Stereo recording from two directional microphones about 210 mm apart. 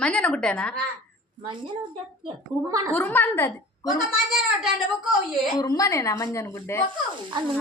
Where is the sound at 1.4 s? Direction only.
25° right (ahead or behind).